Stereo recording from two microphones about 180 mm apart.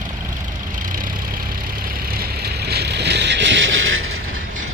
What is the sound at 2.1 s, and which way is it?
Vehicle, 55° right (ahead or behind).